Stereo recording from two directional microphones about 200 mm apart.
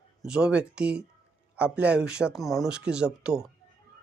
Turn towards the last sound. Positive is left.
turn(degrees=-5)  # may be behind; listen again after turning